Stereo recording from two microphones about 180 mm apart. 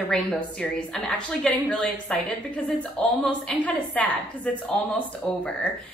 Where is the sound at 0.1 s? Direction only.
5° left (ahead or behind).